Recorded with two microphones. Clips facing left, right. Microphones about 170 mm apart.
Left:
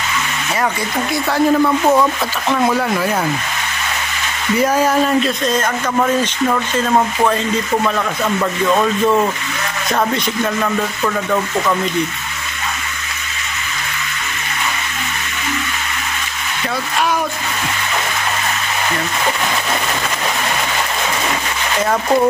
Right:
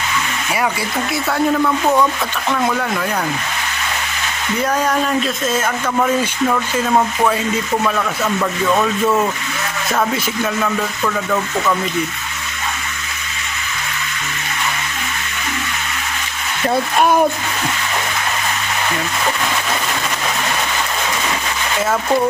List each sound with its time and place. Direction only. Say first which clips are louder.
1.1 s speech: left 3 dB; 5° left (ahead or behind)
4.6 s speech: left 3 dB; 10° left (ahead or behind)
6.9 s speech: left 1 dB; centre (ahead or behind)
17.0 s speech: right 5 dB; 50° right (ahead or behind)